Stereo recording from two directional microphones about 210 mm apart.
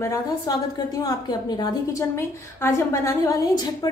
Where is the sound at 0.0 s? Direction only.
15° left (ahead or behind).